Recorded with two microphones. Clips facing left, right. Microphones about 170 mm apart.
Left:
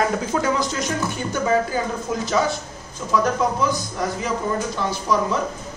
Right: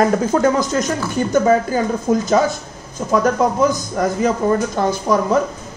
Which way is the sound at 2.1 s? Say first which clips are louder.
Right 12 dB; 50° right (ahead or behind).